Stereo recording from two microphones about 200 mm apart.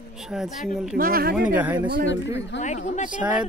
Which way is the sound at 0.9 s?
45° right (ahead or behind).